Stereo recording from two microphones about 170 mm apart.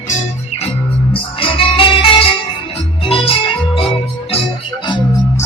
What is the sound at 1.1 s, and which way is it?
Music, 30° left (ahead or behind).